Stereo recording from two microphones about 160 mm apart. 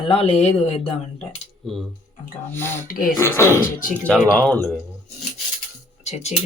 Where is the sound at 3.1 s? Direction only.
15° left (ahead or behind).